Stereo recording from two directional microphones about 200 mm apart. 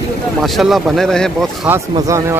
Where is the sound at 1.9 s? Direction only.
15° right (ahead or behind).